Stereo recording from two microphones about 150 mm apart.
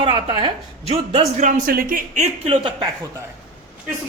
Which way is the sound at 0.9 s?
40° right (ahead or behind).